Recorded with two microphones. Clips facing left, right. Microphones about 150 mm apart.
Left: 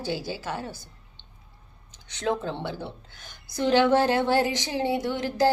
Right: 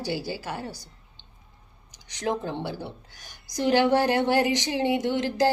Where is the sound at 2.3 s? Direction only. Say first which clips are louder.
Even; 15° right (ahead or behind).